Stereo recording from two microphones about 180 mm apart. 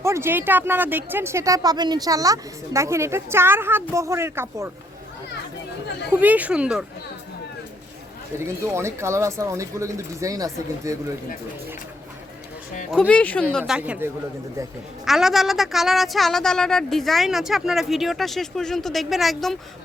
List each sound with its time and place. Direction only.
0.0 s speech: 15° right (ahead or behind)
6.1 s speech: 10° right (ahead or behind)
8.4 s speech: 15° right (ahead or behind)
12.9 s a woman's voice: 5° left (ahead or behind)